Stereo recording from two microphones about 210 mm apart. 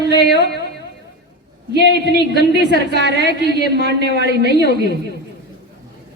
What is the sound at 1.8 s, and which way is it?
A woman's voice, 50° left (ahead or behind).